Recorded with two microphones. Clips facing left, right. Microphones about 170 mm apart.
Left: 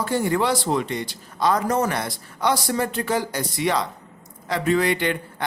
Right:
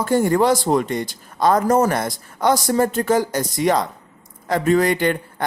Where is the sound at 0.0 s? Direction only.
45° right (ahead or behind).